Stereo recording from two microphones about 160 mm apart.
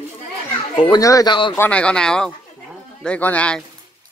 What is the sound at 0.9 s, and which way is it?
Speech, 25° left (ahead or behind).